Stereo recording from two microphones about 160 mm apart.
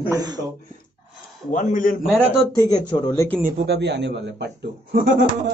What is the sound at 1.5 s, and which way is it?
Speech, 55° left (ahead or behind).